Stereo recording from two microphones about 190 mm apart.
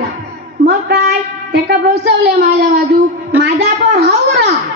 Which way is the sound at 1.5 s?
60° right (ahead or behind).